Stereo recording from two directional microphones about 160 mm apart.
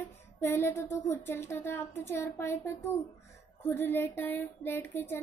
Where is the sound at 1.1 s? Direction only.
15° left (ahead or behind).